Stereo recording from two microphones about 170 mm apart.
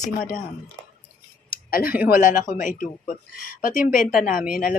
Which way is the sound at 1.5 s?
55° left (ahead or behind).